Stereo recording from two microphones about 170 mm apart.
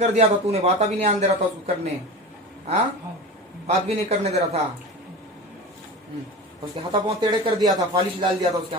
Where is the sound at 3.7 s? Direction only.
40° right (ahead or behind).